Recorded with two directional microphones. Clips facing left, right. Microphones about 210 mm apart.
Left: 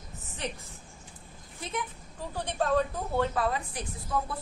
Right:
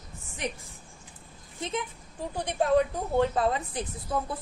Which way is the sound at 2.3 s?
15° right (ahead or behind).